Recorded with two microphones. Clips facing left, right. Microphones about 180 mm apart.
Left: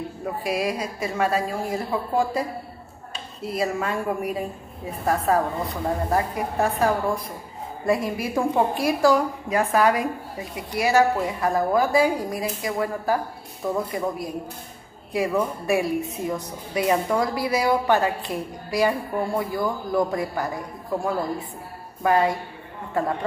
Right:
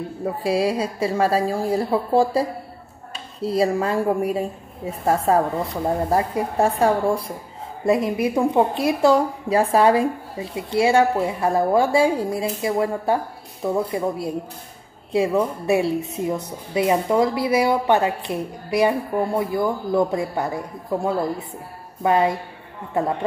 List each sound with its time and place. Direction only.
0.2 s a woman's voice: 30° right (ahead or behind)
3.4 s a woman's voice: 30° right (ahead or behind)
7.8 s a woman's voice: 20° right (ahead or behind)